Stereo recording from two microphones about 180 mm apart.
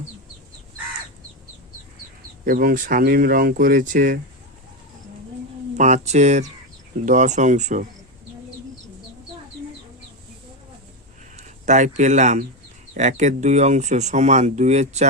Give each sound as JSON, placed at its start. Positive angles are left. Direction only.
{"t": 2.5, "sound": "speech", "side_deg": -50}
{"t": 5.7, "sound": "speech", "side_deg": -40}
{"t": 11.3, "sound": "speech", "side_deg": -40}